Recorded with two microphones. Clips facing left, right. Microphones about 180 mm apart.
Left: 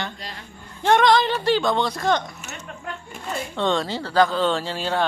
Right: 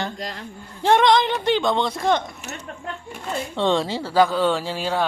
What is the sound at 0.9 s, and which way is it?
Speech, 20° right (ahead or behind).